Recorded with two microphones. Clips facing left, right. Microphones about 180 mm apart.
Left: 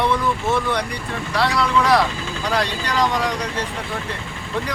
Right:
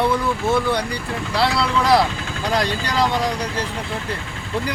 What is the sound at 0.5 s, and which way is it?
Speech, 30° right (ahead or behind).